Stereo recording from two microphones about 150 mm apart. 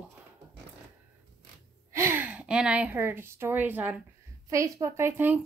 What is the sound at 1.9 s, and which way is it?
A woman's voice, 15° right (ahead or behind).